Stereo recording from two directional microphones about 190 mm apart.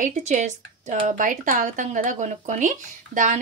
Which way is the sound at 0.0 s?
40° right (ahead or behind).